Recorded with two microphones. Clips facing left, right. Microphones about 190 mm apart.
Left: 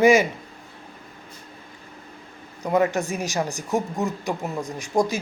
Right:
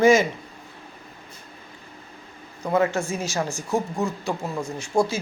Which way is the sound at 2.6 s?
15° left (ahead or behind).